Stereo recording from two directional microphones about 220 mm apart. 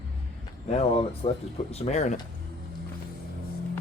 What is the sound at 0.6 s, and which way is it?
Speech, 30° left (ahead or behind).